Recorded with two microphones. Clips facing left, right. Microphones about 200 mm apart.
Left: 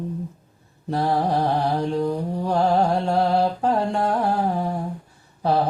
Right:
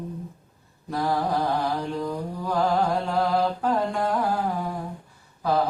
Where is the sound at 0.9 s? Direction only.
30° left (ahead or behind).